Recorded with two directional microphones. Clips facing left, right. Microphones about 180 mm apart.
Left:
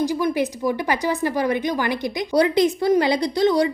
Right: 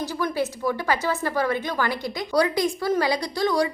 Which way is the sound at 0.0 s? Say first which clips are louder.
Left 5 dB; 15° left (ahead or behind).